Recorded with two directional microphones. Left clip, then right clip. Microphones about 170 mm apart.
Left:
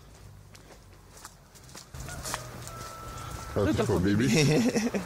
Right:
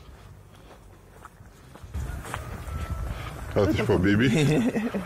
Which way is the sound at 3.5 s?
Centre (ahead or behind).